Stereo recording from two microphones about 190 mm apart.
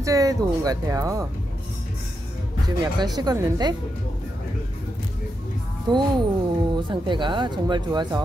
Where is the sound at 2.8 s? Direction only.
20° right (ahead or behind).